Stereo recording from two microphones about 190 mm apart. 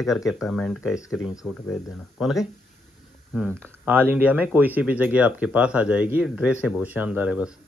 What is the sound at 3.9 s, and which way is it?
Speech, 10° right (ahead or behind).